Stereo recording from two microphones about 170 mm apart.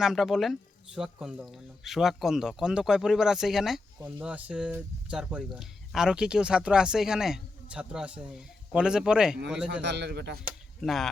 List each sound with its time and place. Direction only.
0.0 s speech: centre (ahead or behind)
9.8 s a man's voice: 80° right
10.8 s speech: centre (ahead or behind)